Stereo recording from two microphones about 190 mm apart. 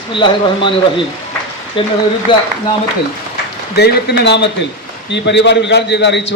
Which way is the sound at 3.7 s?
60° left (ahead or behind).